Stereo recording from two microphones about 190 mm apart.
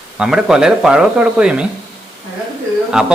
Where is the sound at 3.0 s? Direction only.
5° right (ahead or behind).